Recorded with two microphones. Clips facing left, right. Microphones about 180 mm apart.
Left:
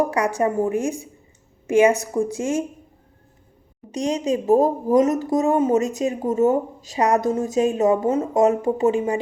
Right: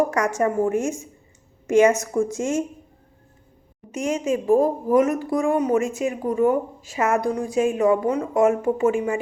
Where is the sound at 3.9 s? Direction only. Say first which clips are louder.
Left 1 dB; 35° left (ahead or behind).